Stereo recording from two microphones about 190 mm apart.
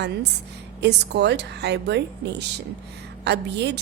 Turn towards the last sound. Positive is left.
turn(degrees=-60)  # may be behind; listen again after turning